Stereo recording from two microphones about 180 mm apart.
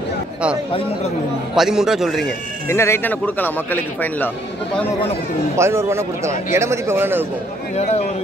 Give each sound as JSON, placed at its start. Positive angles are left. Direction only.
{"t": 1.5, "sound": "a man's voice", "side_deg": -5}
{"t": 2.7, "sound": "speech", "side_deg": 15}
{"t": 5.6, "sound": "a man's voice", "side_deg": -15}
{"t": 7.7, "sound": "a man's voice", "side_deg": 35}